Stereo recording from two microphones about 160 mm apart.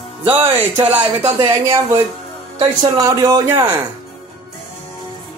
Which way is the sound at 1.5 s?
20° right (ahead or behind).